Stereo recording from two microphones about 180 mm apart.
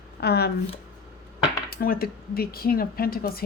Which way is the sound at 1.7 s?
55° left (ahead or behind).